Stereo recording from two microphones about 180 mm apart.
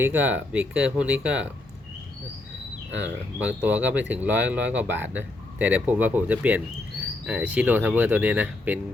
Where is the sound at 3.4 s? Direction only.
10° right (ahead or behind).